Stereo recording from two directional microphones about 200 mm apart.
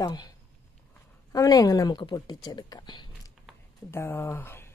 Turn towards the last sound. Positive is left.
turn(degrees=10)  # may be behind; listen again after turning